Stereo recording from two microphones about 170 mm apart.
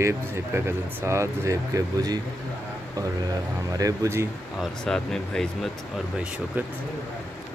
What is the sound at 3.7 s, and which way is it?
Speech, 20° right (ahead or behind).